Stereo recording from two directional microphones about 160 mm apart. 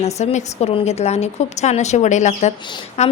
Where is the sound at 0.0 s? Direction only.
45° left (ahead or behind).